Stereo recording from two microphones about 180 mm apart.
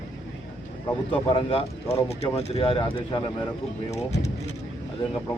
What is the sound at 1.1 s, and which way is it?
Speech, 30° left (ahead or behind).